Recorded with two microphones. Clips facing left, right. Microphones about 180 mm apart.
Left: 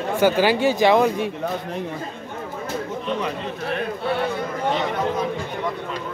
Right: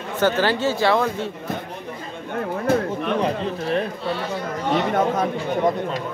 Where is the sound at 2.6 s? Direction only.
60° right (ahead or behind).